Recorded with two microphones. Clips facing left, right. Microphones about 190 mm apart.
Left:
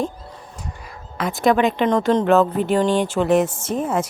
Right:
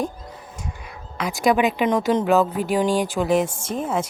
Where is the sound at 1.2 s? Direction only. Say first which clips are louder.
Left 2 dB; centre (ahead or behind).